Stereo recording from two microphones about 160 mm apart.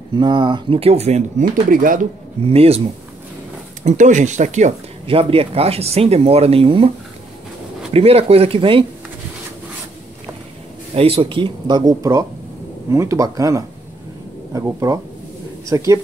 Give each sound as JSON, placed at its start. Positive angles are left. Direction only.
{"t": 0.1, "sound": "speech", "side_deg": -30}
{"t": 1.7, "sound": "speech", "side_deg": -60}
{"t": 2.4, "sound": "speech", "side_deg": -40}
{"t": 3.8, "sound": "speech", "side_deg": -50}
{"t": 7.9, "sound": "speech", "side_deg": -40}
{"t": 11.0, "sound": "speech", "side_deg": -35}